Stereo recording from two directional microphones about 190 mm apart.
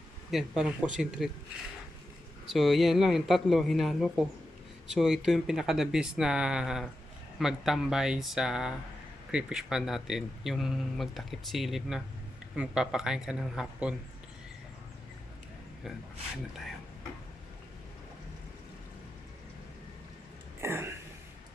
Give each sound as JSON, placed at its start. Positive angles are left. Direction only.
{"t": 0.3, "sound": "speech", "side_deg": 0}
{"t": 2.5, "sound": "speech", "side_deg": 0}
{"t": 20.6, "sound": "a sound", "side_deg": -15}